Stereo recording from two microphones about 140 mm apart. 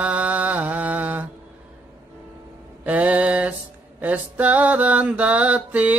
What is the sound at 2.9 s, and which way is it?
Mantra, 10° right (ahead or behind).